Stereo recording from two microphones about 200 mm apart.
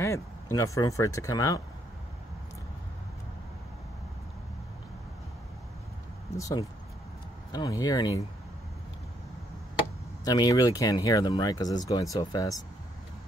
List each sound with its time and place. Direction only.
0.6 s speech: 15° left (ahead or behind)
6.3 s speech: 15° left (ahead or behind)
10.2 s speech: 20° left (ahead or behind)